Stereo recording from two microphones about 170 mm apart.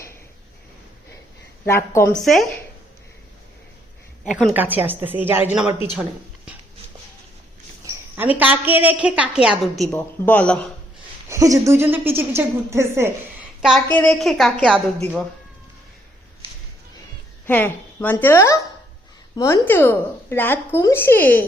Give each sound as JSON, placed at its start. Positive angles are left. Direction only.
{"t": 1.6, "sound": "speech", "side_deg": 15}
{"t": 2.2, "sound": "a woman's voice", "side_deg": 0}
{"t": 4.5, "sound": "a woman's voice", "side_deg": -10}
{"t": 8.1, "sound": "a woman's voice", "side_deg": -10}
{"t": 11.3, "sound": "a woman's voice", "side_deg": -20}
{"t": 13.6, "sound": "a woman's voice", "side_deg": 0}
{"t": 17.4, "sound": "speech", "side_deg": 10}